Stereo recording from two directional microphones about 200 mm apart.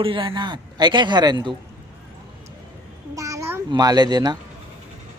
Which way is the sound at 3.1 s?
15° right (ahead or behind).